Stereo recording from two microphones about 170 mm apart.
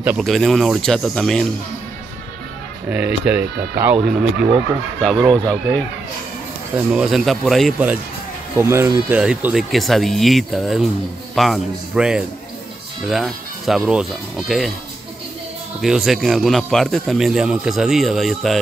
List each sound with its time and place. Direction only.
0.2 s a man's voice: centre (ahead or behind)
2.9 s speech: 5° right (ahead or behind)
4.0 s a man's voice: 5° right (ahead or behind)
6.9 s a man's voice: 5° right (ahead or behind)
8.5 s speech: 15° right (ahead or behind)
9.2 s a man's voice: 5° right (ahead or behind)
15.8 s a man's voice: centre (ahead or behind)